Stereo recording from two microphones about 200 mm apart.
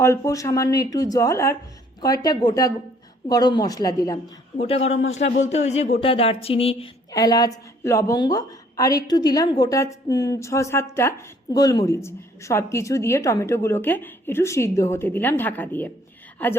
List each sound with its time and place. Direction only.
0.0 s a woman's voice: 15° left (ahead or behind)
4.5 s a woman's voice: 30° left (ahead or behind); by 15.9 s 10° left (ahead or behind)